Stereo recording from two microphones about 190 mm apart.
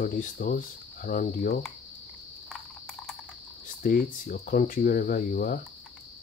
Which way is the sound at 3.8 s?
50° left (ahead or behind).